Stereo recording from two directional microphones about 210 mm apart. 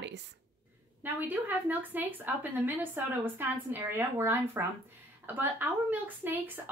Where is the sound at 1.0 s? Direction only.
10° right (ahead or behind).